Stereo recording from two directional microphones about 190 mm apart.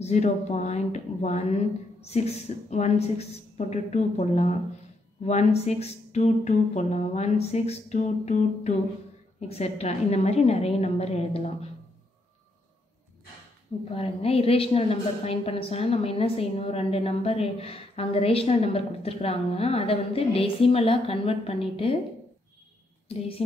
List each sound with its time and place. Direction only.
0.0 s a woman's voice: 35° left (ahead or behind)
13.9 s a woman's voice: 30° left (ahead or behind)
23.0 s speech: 30° left (ahead or behind)